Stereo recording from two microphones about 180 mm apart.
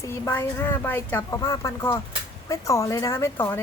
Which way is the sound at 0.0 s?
15° left (ahead or behind).